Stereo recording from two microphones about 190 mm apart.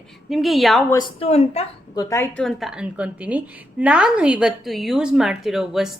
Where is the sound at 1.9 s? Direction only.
15° left (ahead or behind).